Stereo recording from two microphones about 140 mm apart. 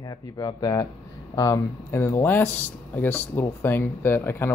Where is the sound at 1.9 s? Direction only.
15° left (ahead or behind).